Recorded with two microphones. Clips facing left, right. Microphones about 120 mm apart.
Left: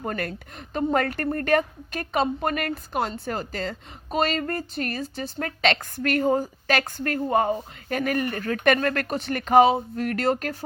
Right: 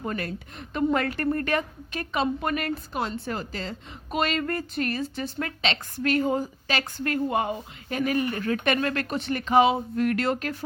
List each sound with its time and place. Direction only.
0.0 s a woman's voice: 45° left (ahead or behind)
5.6 s a woman's voice: 50° left (ahead or behind)